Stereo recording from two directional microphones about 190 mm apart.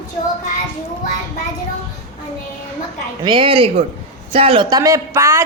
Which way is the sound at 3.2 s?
25° right (ahead or behind).